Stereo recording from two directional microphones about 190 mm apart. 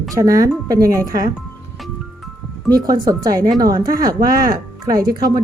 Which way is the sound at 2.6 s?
20° right (ahead or behind).